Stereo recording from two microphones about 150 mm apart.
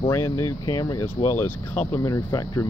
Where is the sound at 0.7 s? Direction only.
25° left (ahead or behind).